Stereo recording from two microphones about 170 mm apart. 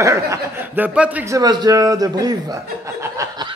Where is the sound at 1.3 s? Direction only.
25° right (ahead or behind).